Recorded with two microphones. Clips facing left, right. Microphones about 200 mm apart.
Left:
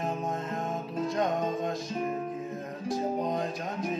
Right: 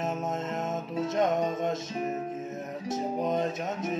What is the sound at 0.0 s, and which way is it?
Music, 25° right (ahead or behind).